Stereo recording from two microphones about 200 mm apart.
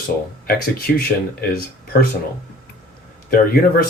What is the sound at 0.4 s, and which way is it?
Speech, 50° left (ahead or behind).